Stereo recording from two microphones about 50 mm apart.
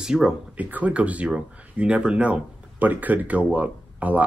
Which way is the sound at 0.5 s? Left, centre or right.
Right.